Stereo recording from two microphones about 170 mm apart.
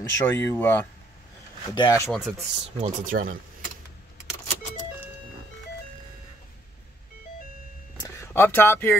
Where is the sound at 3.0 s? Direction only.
50° right (ahead or behind).